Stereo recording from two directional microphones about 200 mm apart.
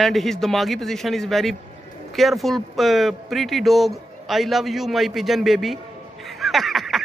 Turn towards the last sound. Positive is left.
turn(degrees=0)  # may be behind; listen again after turning